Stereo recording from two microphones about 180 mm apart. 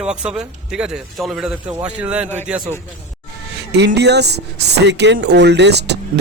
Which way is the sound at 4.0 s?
70° right (ahead or behind).